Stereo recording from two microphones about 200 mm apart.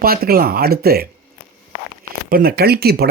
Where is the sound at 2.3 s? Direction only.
50° right (ahead or behind).